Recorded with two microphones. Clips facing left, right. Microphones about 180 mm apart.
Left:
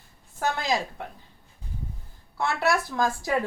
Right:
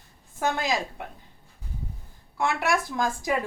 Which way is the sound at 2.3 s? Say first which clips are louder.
Even; 15° right (ahead or behind).